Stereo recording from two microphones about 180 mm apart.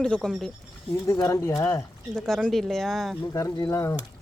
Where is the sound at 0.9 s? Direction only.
20° left (ahead or behind).